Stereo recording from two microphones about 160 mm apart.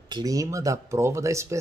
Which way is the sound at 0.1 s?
20° right (ahead or behind).